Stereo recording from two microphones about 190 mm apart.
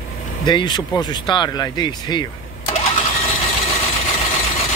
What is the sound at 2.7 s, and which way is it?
Engine, 30° left (ahead or behind).